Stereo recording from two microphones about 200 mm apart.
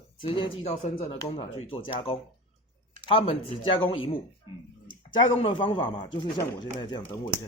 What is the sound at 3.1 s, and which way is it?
Speech, 30° left (ahead or behind).